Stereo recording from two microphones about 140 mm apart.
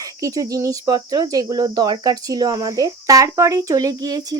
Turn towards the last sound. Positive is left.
turn(degrees=-25)  # may be behind; listen again after turning